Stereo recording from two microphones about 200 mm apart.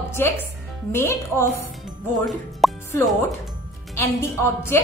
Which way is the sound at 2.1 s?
Centre (ahead or behind).